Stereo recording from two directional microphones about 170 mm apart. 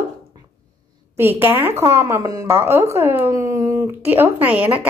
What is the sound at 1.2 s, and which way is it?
A woman's voice, 10° right (ahead or behind).